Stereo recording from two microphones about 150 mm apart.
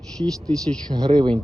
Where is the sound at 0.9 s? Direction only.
25° right (ahead or behind).